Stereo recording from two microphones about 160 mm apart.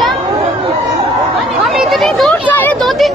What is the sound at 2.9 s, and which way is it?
Speech, centre (ahead or behind).